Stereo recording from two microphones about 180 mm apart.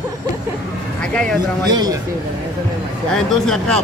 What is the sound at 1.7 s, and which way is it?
Speech, 25° right (ahead or behind).